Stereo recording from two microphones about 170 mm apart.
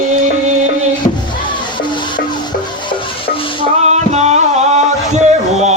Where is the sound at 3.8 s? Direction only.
40° right (ahead or behind).